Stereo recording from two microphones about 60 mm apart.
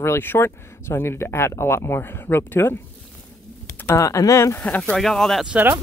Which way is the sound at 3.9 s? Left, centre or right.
Left.